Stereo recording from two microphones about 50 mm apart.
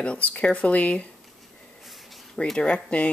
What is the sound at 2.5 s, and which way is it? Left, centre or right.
Speech, left.